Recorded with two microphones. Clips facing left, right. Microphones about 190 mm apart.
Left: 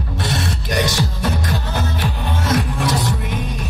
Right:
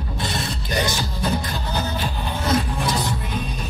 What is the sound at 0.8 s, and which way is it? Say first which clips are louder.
Music: left 4 dB; 75° left (ahead or behind).